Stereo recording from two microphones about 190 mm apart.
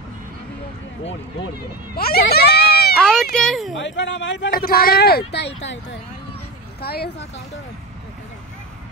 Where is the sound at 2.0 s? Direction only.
55° left (ahead or behind).